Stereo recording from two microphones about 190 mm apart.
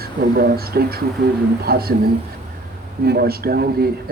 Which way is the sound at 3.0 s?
55° right (ahead or behind).